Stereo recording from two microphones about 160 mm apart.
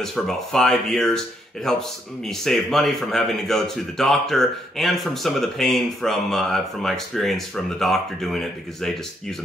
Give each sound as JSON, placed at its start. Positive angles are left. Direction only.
{"t": 0.0, "sound": "speech", "side_deg": 5}